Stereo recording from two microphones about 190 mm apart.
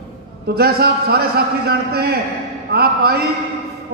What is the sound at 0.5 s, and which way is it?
A man's voice, 55° right (ahead or behind).